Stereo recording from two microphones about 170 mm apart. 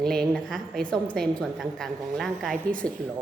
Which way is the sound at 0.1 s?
Centre (ahead or behind).